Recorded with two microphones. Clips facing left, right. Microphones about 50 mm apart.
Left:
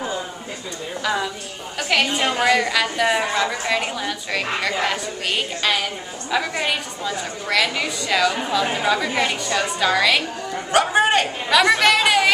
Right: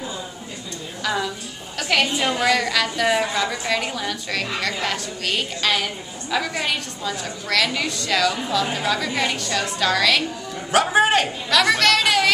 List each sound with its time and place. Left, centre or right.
1.0 s a woman's voice: centre
10.7 s a man's voice: centre
11.5 s a woman's voice: centre